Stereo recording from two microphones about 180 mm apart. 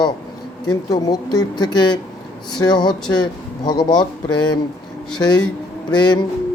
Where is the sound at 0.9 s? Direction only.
20° left (ahead or behind).